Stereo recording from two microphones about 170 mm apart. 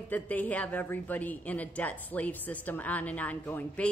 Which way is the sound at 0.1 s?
10° left (ahead or behind).